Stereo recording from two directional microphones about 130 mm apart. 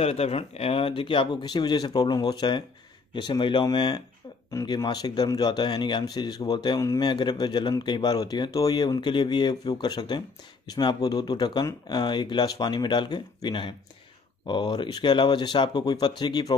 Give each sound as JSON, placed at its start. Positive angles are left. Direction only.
{"t": 0.0, "sound": "speech", "side_deg": 50}